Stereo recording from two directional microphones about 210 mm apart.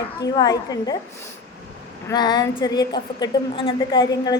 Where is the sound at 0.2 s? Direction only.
20° left (ahead or behind).